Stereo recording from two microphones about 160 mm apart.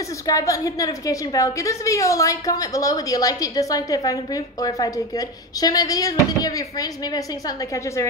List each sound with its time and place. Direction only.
0.3 s a woman's voice: 20° left (ahead or behind)